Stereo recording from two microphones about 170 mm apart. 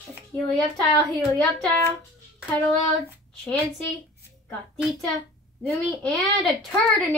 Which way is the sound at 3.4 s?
5° left (ahead or behind).